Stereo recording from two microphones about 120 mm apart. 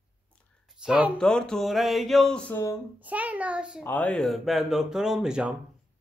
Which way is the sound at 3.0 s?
10° right (ahead or behind).